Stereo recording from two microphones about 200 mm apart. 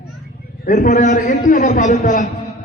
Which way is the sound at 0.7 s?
40° left (ahead or behind).